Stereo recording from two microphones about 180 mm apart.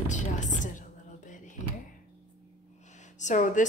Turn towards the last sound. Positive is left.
turn(degrees=45)  # may be behind; listen again after turning